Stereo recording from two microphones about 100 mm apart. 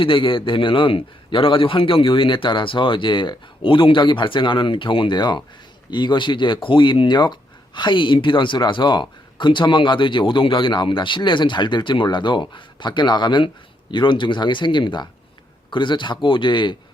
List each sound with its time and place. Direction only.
0.0 s a man's voice: 60° left (ahead or behind)